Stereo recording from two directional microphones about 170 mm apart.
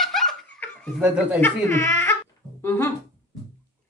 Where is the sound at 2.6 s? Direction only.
15° left (ahead or behind).